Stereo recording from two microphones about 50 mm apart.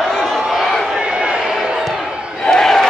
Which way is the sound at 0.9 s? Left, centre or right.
Centre.